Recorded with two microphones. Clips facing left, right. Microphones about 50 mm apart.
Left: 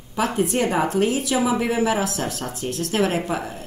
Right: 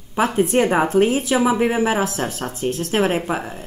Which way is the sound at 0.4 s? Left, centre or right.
Right.